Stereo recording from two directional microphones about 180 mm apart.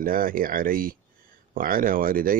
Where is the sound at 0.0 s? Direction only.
50° right (ahead or behind).